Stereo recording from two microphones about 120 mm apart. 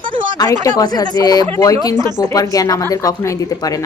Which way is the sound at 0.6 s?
30° left (ahead or behind).